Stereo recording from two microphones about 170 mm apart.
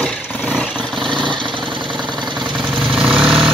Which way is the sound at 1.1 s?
30° right (ahead or behind).